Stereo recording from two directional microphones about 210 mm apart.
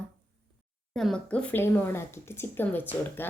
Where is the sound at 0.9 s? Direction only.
5° left (ahead or behind).